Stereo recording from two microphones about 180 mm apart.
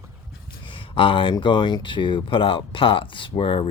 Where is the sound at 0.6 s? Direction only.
30° left (ahead or behind).